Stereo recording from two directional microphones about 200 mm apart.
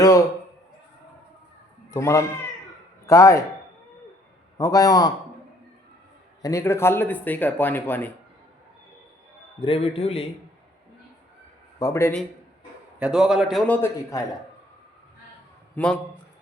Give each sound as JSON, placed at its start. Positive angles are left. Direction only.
{"t": 0.0, "sound": "a sound", "side_deg": 15}
{"t": 1.9, "sound": "speech", "side_deg": 15}
{"t": 4.5, "sound": "speech", "side_deg": 15}
{"t": 6.4, "sound": "speech", "side_deg": 15}
{"t": 9.6, "sound": "a man's voice", "side_deg": 30}
{"t": 11.8, "sound": "speech", "side_deg": 15}
{"t": 13.0, "sound": "a man's voice", "side_deg": -5}
{"t": 15.7, "sound": "a man's voice", "side_deg": 5}